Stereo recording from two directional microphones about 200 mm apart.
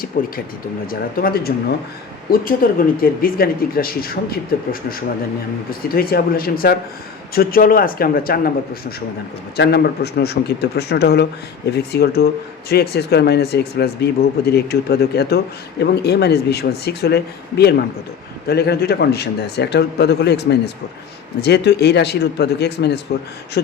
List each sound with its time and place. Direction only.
0.1 s speech: 45° left (ahead or behind)
9.6 s speech: 55° left (ahead or behind)